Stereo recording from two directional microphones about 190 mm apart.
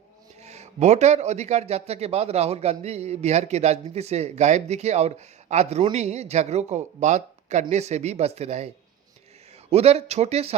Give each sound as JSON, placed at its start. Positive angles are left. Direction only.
{"t": 0.4, "sound": "a man's voice", "side_deg": -35}